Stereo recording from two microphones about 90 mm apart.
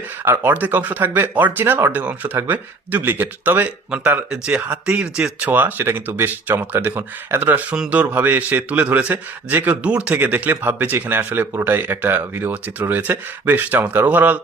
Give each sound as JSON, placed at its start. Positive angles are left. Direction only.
{"t": 0.3, "sound": "speech", "side_deg": -20}